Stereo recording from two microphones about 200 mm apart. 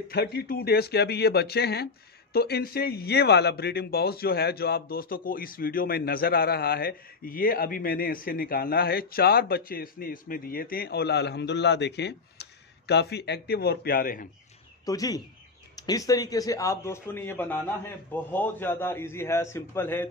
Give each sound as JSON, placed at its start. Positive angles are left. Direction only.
{"t": 0.1, "sound": "a man's voice", "side_deg": 55}
{"t": 14.9, "sound": "speech", "side_deg": 20}